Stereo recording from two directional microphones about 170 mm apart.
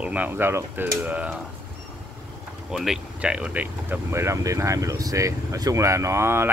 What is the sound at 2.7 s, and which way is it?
Speech, 5° right (ahead or behind).